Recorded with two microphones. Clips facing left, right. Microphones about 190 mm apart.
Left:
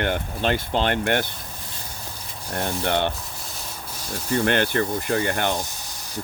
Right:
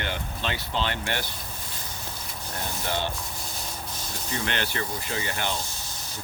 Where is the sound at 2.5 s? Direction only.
60° left (ahead or behind).